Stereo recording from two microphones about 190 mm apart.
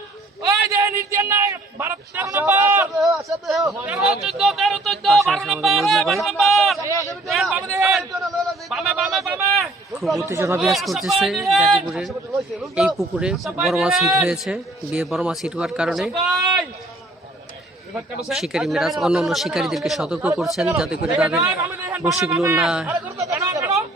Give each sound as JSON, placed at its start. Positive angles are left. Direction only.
{"t": 0.4, "sound": "a man's voice", "side_deg": -15}
{"t": 3.0, "sound": "a man's voice", "side_deg": 0}
{"t": 9.6, "sound": "a sound", "side_deg": 0}
{"t": 10.2, "sound": "a man's voice", "side_deg": -15}
{"t": 10.6, "sound": "a man's voice", "side_deg": 0}
{"t": 17.9, "sound": "a man's voice", "side_deg": 0}
{"t": 23.1, "sound": "chatter", "side_deg": -15}